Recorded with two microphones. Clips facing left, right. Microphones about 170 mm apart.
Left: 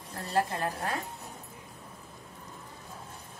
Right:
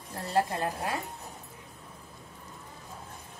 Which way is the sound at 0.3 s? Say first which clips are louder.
Right 1 dB; 20° right (ahead or behind).